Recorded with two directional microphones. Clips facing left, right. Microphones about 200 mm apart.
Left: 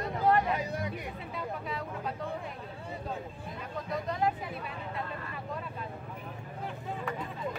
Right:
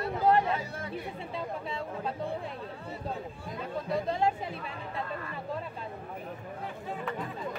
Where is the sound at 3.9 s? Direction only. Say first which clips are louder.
Right 2 dB; 25° right (ahead or behind).